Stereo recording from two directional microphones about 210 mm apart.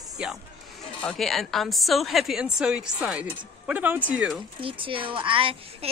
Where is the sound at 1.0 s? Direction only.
Centre (ahead or behind).